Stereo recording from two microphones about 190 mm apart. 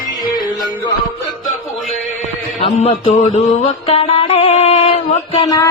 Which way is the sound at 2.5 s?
30° left (ahead or behind).